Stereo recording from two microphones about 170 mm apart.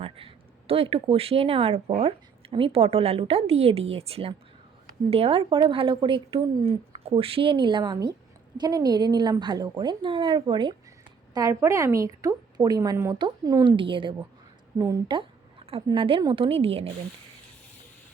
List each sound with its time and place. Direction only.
0.0 s a woman's voice: 35° right (ahead or behind)